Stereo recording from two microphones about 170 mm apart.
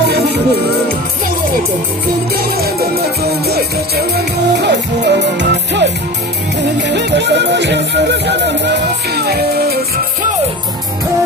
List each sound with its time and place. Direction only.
0.0 s music: 75° right (ahead or behind)
2.3 s music: 65° right (ahead or behind)